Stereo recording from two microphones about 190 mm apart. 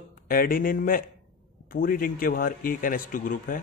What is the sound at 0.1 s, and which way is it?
Speech, 50° left (ahead or behind).